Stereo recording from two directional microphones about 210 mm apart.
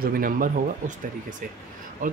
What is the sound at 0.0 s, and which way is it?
Speech, 45° right (ahead or behind).